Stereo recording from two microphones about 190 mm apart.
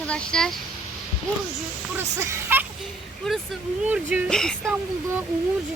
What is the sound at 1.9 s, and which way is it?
Speech, 10° right (ahead or behind).